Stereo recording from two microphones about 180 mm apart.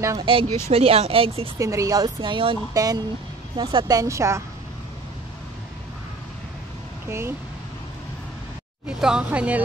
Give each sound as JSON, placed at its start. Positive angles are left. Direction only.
{"t": 0.0, "sound": "speech", "side_deg": -15}
{"t": 0.7, "sound": "speech", "side_deg": -35}
{"t": 1.6, "sound": "speech", "side_deg": -15}
{"t": 7.1, "sound": "speech", "side_deg": -15}
{"t": 8.8, "sound": "speech", "side_deg": -5}